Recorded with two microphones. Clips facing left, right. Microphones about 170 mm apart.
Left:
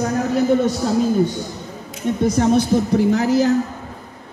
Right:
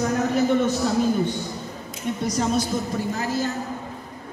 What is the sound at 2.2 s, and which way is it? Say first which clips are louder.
A woman's voice: left 8 dB; 55° left (ahead or behind).